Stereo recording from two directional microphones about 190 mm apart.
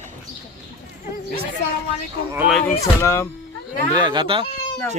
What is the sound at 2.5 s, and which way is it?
Speech, centre (ahead or behind).